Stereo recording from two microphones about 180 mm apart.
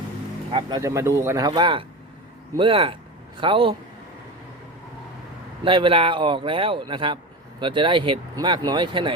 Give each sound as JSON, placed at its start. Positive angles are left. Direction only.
{"t": 0.5, "sound": "a man's voice", "side_deg": -20}
{"t": 5.6, "sound": "a man's voice", "side_deg": -30}